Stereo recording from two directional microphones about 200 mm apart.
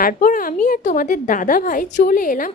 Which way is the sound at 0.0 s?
45° left (ahead or behind).